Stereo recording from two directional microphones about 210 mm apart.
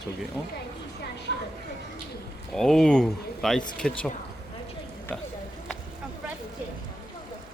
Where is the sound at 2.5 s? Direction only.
5° left (ahead or behind).